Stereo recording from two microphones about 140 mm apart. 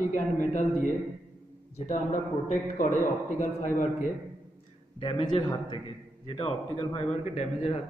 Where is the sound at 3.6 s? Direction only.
70° left (ahead or behind).